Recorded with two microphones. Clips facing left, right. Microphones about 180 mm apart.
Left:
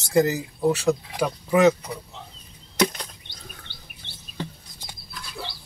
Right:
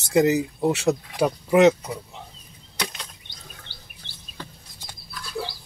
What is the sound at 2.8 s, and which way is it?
Chop, 40° left (ahead or behind).